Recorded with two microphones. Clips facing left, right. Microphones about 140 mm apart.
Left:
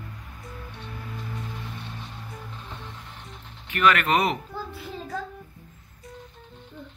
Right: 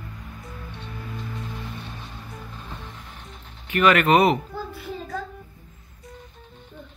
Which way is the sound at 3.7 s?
15° right (ahead or behind).